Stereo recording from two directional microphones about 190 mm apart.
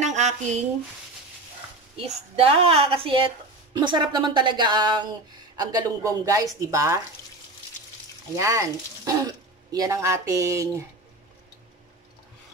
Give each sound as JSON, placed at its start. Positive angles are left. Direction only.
{"t": 0.0, "sound": "a sound", "side_deg": -35}
{"t": 2.0, "sound": "speech", "side_deg": -30}
{"t": 8.4, "sound": "speech", "side_deg": -15}